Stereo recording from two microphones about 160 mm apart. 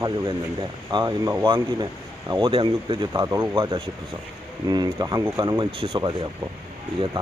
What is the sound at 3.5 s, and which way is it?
Speech, 30° right (ahead or behind).